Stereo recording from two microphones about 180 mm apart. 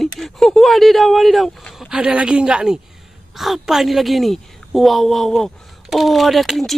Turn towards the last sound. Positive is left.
turn(degrees=0)  # may be behind; listen again after turning